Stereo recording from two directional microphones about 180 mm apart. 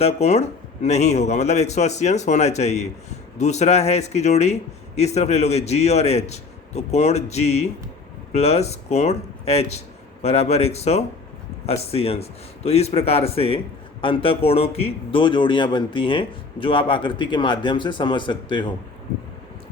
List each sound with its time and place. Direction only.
0.0 s a man's voice: 35° left (ahead or behind)